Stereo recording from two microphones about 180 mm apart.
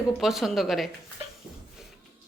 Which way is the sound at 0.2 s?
Centre (ahead or behind).